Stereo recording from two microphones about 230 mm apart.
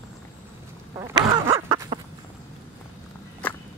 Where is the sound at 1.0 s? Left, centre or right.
Centre.